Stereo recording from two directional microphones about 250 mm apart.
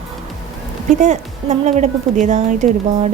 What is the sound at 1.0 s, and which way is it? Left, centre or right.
Speech, right.